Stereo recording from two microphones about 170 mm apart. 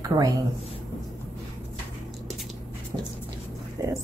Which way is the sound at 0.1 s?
20° right (ahead or behind).